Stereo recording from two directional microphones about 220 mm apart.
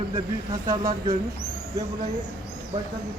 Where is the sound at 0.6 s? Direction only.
15° right (ahead or behind).